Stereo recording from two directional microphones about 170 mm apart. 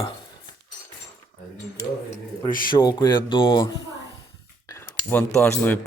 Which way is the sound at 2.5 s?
55° left (ahead or behind).